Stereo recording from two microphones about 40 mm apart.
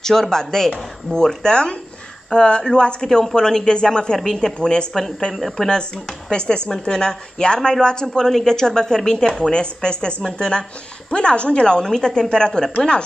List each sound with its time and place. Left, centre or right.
0.0 s a woman's voice: centre
6.3 s a woman's voice: left
9.4 s a woman's voice: left